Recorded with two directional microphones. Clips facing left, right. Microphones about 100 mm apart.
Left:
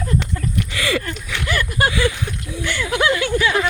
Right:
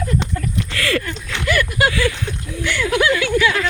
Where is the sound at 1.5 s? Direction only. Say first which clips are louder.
Right 3 dB; 25° left (ahead or behind).